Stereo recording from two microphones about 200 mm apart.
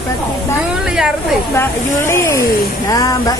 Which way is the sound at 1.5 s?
15° left (ahead or behind).